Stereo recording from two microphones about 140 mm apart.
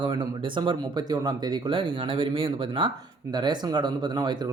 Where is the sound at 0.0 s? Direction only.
30° right (ahead or behind).